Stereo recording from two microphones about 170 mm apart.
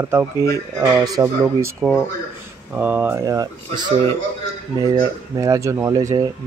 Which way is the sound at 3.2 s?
20° right (ahead or behind).